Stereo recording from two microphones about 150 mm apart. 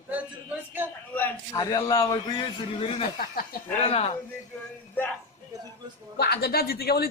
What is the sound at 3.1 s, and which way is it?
Speech, 80° left.